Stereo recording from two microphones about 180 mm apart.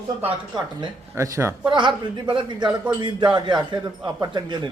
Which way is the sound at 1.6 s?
25° right (ahead or behind).